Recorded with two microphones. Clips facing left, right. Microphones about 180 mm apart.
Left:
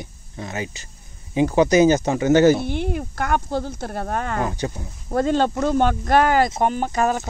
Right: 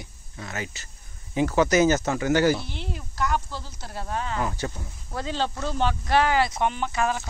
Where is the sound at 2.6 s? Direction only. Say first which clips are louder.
Left 11 dB; 55° left (ahead or behind).